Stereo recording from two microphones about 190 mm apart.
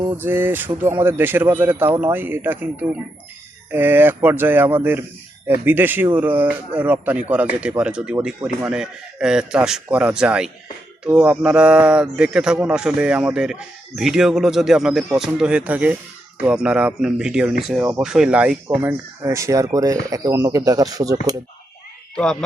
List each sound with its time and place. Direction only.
0.2 s speech: 10° right (ahead or behind)
22.1 s speech: 5° left (ahead or behind)